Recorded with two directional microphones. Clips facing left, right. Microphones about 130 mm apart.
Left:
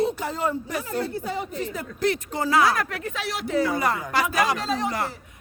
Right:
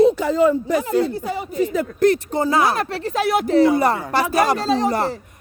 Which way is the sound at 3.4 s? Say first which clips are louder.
Right 6 dB; 30° right (ahead or behind).